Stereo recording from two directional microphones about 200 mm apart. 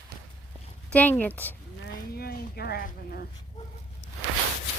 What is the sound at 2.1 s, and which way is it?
Speech, 50° left (ahead or behind).